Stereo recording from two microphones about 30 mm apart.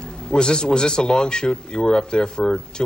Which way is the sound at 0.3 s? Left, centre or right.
Left.